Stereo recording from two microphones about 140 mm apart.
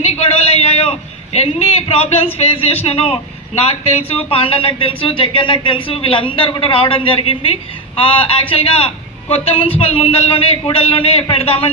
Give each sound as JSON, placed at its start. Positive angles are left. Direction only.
{"t": 0.0, "sound": "a man's voice", "side_deg": 50}
{"t": 4.3, "sound": "a man's voice", "side_deg": 40}